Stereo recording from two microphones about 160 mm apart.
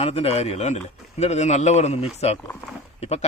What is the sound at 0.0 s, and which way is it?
Speech, 40° left (ahead or behind).